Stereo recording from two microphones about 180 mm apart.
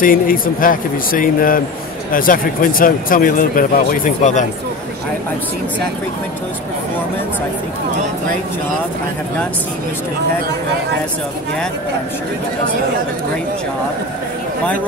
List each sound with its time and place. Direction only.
0.0 s speech: 50° left (ahead or behind)